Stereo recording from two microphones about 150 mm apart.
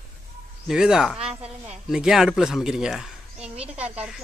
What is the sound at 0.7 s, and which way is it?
Speech, 5° right (ahead or behind).